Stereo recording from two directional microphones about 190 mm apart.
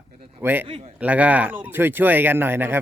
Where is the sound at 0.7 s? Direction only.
30° right (ahead or behind).